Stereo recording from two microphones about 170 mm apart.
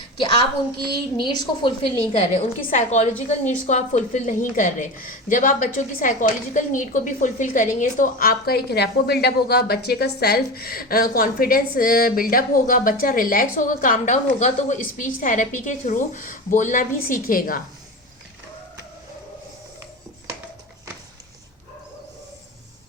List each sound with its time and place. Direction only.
0.2 s a woman's voice: 30° left (ahead or behind)
2.6 s a woman's voice: 50° left (ahead or behind)